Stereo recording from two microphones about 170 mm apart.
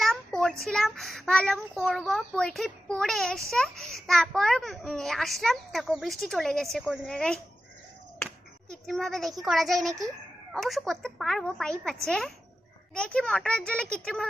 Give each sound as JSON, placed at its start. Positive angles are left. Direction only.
{"t": 0.0, "sound": "a sound", "side_deg": 0}
{"t": 0.6, "sound": "speech", "side_deg": 0}
{"t": 8.9, "sound": "speech", "side_deg": 0}